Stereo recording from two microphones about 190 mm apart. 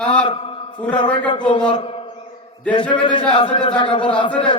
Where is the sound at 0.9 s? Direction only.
25° left (ahead or behind).